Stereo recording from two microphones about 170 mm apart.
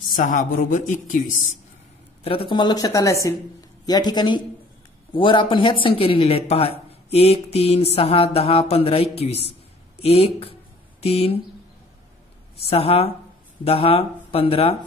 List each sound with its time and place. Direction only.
0.1 s speech: 50° left (ahead or behind)
2.2 s speech: 30° left (ahead or behind)
5.1 s mantra: 30° left (ahead or behind)
11.0 s speech: 35° left (ahead or behind)
12.5 s mantra: 35° left (ahead or behind)